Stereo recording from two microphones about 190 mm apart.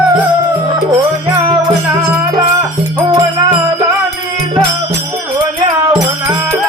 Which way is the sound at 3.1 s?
20° right (ahead or behind).